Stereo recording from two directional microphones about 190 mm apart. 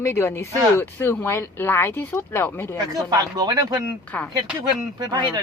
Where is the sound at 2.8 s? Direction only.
20° right (ahead or behind).